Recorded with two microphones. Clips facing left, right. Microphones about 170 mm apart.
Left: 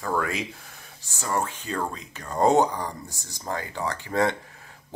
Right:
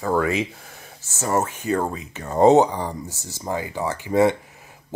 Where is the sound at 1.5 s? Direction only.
10° right (ahead or behind).